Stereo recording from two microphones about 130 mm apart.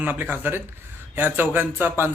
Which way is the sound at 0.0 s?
15° right (ahead or behind).